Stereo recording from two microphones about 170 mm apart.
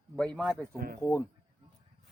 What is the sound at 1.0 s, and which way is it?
Speech, 15° left (ahead or behind).